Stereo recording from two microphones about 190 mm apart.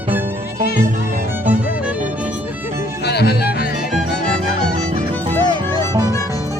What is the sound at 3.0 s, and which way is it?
Music, 60° left (ahead or behind).